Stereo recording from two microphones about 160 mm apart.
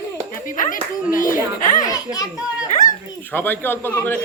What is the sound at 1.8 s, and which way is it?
Speech, 20° left (ahead or behind).